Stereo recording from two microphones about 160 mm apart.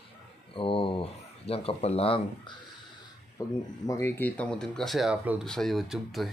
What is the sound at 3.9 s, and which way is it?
Speech, 15° left (ahead or behind).